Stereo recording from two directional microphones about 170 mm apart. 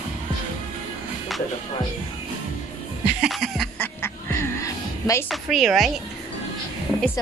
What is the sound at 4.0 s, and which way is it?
Music, 15° left (ahead or behind).